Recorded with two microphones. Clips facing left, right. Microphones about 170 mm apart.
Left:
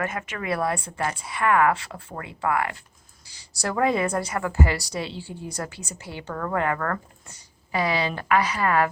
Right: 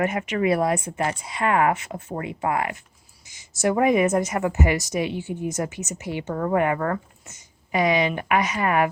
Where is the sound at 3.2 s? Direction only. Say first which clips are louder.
Right 1 dB; 35° left (ahead or behind).